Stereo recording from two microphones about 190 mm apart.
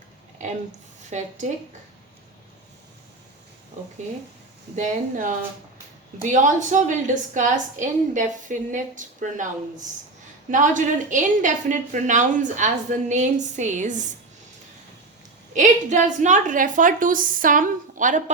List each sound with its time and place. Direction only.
0.4 s a sound: 40° right (ahead or behind)
1.1 s a woman's voice: 40° right (ahead or behind)
4.7 s a woman's voice: 40° right (ahead or behind)
15.5 s a woman's voice: 40° right (ahead or behind)